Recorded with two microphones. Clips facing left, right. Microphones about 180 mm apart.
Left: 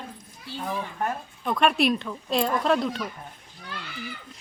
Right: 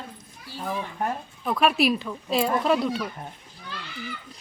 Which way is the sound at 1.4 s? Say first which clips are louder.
Even; 5° right (ahead or behind).